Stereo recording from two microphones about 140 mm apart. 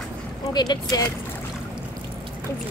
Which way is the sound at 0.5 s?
30° left (ahead or behind).